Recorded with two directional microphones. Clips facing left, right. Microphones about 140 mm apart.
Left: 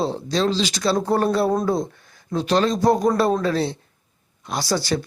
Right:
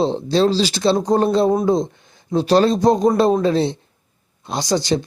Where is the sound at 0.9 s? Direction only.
15° right (ahead or behind); by 2.7 s 35° right (ahead or behind).